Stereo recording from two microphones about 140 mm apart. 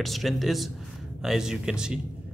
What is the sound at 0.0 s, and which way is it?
A man's voice, centre (ahead or behind).